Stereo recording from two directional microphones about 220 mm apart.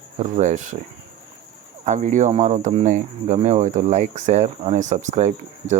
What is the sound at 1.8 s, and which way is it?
Speech, 30° right (ahead or behind).